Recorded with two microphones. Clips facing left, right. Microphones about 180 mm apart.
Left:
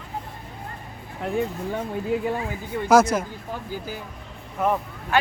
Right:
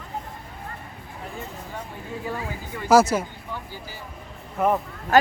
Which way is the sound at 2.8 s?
5° right (ahead or behind).